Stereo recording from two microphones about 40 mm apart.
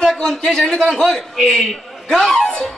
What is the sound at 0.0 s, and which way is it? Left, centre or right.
A man's voice, centre.